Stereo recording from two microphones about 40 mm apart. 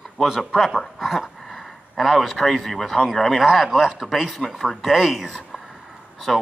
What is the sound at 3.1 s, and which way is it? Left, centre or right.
Speech, centre.